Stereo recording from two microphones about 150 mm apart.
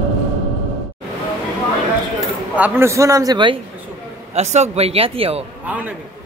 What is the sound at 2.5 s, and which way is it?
A man's voice, 10° right (ahead or behind).